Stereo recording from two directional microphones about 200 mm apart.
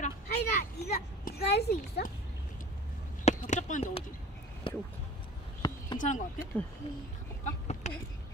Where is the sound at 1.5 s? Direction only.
55° left (ahead or behind).